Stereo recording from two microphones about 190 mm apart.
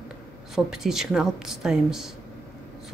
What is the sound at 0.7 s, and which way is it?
Speech, 5° right (ahead or behind).